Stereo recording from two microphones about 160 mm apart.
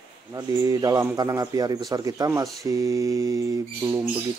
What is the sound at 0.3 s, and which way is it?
A man's voice, 20° right (ahead or behind).